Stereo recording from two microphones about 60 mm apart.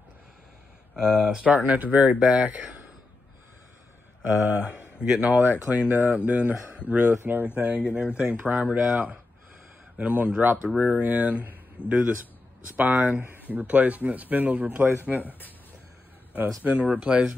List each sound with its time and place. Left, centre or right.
0.9 s speech: centre; by 2.9 s right
4.5 s speech: right
7.2 s speech: right
11.8 s speech: left
12.7 s speech: right
15.2 s speech: left
16.6 s speech: right